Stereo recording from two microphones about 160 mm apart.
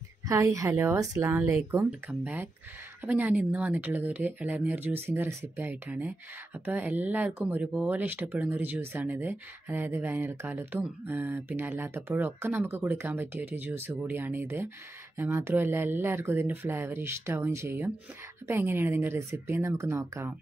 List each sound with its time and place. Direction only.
0.3 s speech: 20° right (ahead or behind)